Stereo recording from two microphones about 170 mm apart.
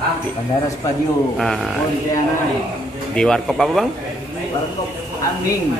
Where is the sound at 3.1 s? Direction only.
5° left (ahead or behind).